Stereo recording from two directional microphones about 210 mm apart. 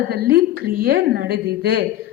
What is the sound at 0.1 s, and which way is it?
A woman's voice, 45° right (ahead or behind).